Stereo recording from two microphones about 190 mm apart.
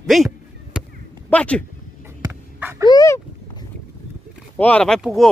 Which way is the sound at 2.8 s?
20° left (ahead or behind).